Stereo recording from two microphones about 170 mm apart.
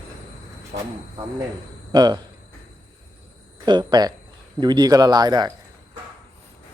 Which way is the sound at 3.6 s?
25° right (ahead or behind).